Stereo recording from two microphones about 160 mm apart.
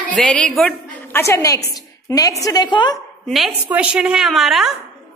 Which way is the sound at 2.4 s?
25° left (ahead or behind).